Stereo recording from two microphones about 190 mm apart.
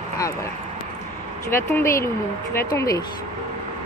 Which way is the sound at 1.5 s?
15° left (ahead or behind).